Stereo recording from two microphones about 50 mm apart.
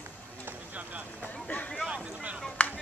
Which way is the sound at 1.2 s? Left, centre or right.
Left.